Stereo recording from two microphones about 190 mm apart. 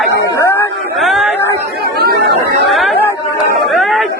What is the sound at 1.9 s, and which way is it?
Chatter, 55° right (ahead or behind).